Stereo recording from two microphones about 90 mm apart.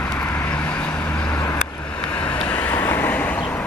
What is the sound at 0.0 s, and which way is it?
Vehicle, 20° left (ahead or behind).